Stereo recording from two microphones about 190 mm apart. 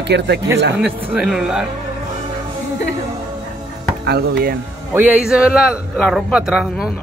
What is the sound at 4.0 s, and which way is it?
Speech, 60° right (ahead or behind).